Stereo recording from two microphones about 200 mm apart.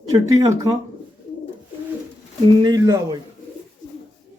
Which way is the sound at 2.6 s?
15° right (ahead or behind).